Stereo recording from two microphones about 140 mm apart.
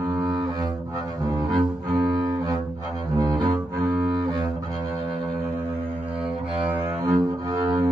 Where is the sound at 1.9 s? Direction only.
25° right (ahead or behind).